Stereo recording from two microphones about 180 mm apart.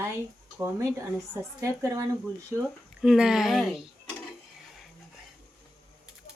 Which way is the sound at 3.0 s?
5° right (ahead or behind).